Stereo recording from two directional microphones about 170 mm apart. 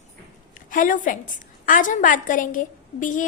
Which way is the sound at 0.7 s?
50° left (ahead or behind).